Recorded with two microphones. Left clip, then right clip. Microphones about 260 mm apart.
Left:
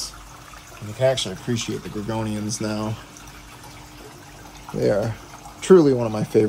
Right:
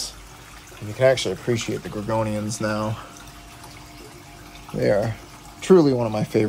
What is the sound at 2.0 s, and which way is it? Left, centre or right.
Speech, right.